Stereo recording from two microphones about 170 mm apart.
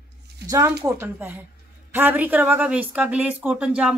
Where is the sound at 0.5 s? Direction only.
15° right (ahead or behind).